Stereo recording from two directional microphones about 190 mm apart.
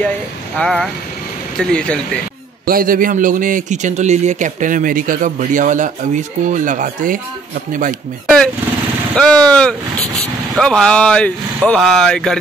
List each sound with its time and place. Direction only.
0.6 s speech: 5° left (ahead or behind)
2.6 s a man's voice: 50° right (ahead or behind)
9.1 s speech: 5° left (ahead or behind)